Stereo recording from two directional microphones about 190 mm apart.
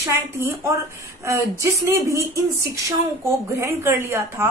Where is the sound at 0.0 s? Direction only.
15° right (ahead or behind).